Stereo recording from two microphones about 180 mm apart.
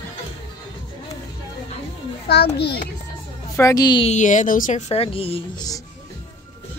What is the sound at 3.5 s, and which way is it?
Speech, 20° left (ahead or behind).